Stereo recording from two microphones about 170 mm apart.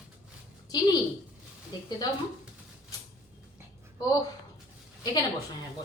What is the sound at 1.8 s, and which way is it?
Speech, 25° left (ahead or behind).